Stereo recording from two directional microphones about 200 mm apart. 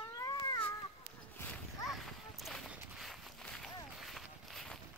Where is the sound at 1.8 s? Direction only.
Centre (ahead or behind).